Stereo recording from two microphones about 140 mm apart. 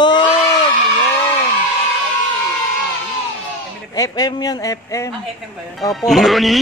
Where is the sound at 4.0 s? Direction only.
30° left (ahead or behind).